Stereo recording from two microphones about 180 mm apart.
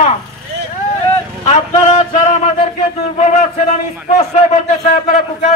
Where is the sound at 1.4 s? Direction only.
40° left (ahead or behind).